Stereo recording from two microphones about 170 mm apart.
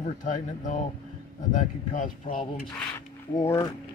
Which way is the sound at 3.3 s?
20° left (ahead or behind).